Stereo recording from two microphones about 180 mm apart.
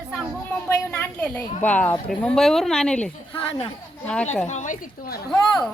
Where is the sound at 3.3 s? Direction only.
30° left (ahead or behind).